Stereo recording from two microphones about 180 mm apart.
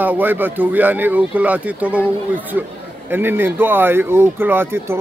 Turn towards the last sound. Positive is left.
turn(degrees=-10)  # may be behind; listen again after turning